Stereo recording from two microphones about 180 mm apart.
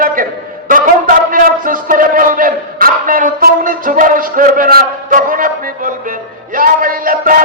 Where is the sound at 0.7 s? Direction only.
50° right (ahead or behind).